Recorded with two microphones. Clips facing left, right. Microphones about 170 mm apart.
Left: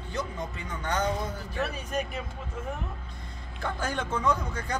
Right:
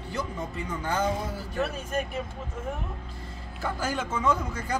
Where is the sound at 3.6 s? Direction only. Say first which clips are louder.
Right 1 dB; 5° right (ahead or behind).